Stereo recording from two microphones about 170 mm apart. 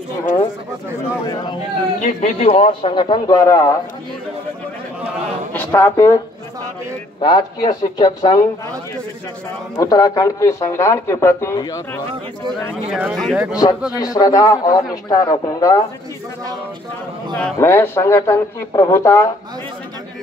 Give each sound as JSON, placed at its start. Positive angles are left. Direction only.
{"t": 2.0, "sound": "speech", "side_deg": 50}
{"t": 2.3, "sound": "a man's voice", "side_deg": 40}
{"t": 5.5, "sound": "a man's voice", "side_deg": 15}
{"t": 9.8, "sound": "speech", "side_deg": 20}
{"t": 12.9, "sound": "speech", "side_deg": 0}
{"t": 13.9, "sound": "a man's voice", "side_deg": 20}
{"t": 17.6, "sound": "speech", "side_deg": 15}